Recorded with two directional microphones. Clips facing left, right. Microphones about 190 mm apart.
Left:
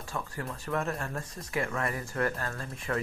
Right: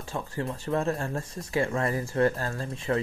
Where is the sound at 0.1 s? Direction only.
25° right (ahead or behind).